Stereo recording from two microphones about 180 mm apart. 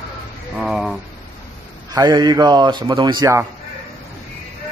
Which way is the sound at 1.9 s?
20° right (ahead or behind).